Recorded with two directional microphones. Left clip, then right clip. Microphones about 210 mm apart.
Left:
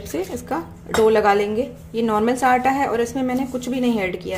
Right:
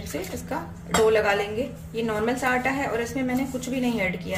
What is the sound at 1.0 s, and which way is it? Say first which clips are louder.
A woman's voice: left 7 dB; 45° left (ahead or behind).